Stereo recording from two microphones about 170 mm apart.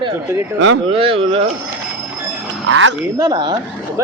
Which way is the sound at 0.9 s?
35° right (ahead or behind).